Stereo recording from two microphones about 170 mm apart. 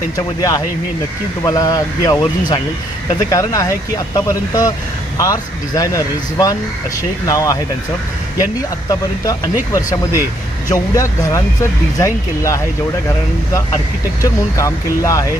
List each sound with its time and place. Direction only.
0.2 s speech: 20° left (ahead or behind)
9.7 s speech: 20° left (ahead or behind)
14.2 s speech: 20° left (ahead or behind)